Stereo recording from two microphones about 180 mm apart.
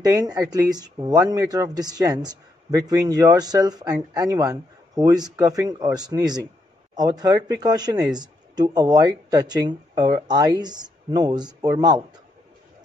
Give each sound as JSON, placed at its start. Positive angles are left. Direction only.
{"t": 0.0, "sound": "speech", "side_deg": -20}